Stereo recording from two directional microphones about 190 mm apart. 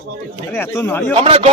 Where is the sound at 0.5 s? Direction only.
10° left (ahead or behind).